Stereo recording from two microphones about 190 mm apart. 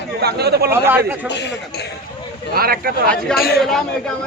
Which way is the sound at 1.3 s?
65° left (ahead or behind).